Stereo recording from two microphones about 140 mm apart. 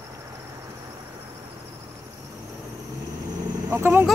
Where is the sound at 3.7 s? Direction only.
15° right (ahead or behind).